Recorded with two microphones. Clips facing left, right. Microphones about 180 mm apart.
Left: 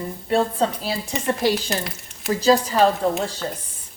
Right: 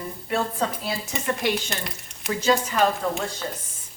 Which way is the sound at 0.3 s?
30° left (ahead or behind).